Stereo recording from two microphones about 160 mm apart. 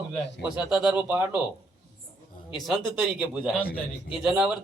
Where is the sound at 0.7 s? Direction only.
5° right (ahead or behind).